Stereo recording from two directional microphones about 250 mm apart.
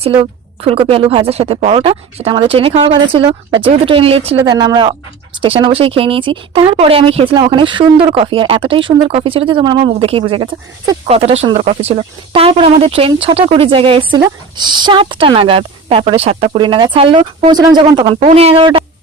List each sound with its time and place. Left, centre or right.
0.0 s speech: right